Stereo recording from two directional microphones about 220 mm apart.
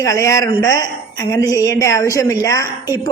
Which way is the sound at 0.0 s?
15° left (ahead or behind).